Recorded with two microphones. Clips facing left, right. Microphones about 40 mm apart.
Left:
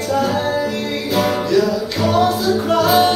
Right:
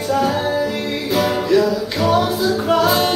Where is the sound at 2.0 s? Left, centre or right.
Centre.